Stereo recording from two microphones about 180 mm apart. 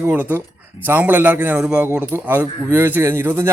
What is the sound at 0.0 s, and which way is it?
A man's voice, 10° right (ahead or behind).